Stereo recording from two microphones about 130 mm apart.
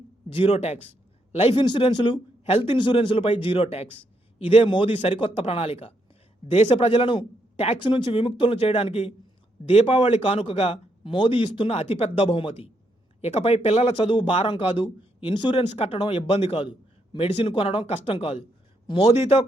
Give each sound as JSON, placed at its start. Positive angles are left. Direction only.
{"t": 0.3, "sound": "a man's voice", "side_deg": 45}
{"t": 1.5, "sound": "speech", "side_deg": 40}